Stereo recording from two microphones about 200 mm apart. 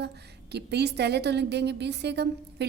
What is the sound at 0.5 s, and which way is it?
A woman's voice, 55° right (ahead or behind).